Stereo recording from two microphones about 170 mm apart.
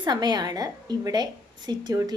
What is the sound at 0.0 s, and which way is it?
A woman's voice, 25° right (ahead or behind).